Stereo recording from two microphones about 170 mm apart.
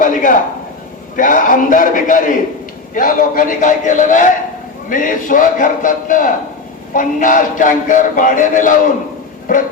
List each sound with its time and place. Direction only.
0.0 s music: 50° left (ahead or behind)